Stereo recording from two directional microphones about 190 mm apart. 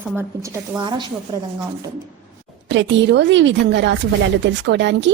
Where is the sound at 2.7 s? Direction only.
70° right (ahead or behind).